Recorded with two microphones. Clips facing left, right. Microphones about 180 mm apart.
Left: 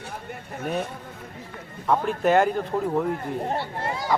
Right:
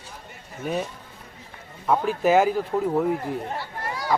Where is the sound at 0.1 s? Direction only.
60° left (ahead or behind).